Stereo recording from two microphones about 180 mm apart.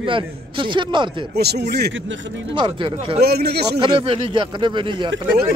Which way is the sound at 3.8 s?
30° right (ahead or behind).